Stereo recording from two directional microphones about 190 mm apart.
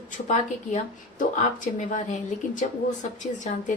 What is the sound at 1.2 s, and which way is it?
Speech, 45° left (ahead or behind).